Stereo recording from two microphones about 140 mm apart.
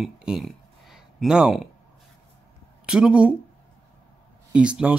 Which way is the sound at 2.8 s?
5° right (ahead or behind).